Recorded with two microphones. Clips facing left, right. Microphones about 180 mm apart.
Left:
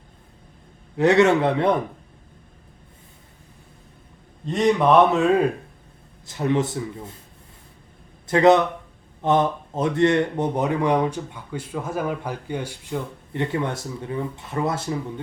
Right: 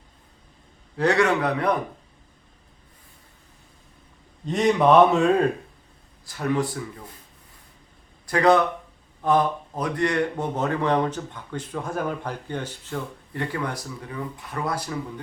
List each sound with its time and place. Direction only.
0.9 s speech: 20° left (ahead or behind)
4.4 s speech: centre (ahead or behind)
6.2 s speech: 20° left (ahead or behind)
8.3 s speech: 20° left (ahead or behind)